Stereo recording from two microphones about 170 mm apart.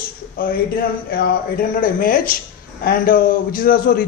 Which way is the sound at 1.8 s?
55° left (ahead or behind).